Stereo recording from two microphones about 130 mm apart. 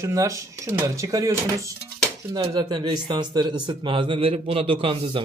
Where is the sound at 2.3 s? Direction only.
40° right (ahead or behind).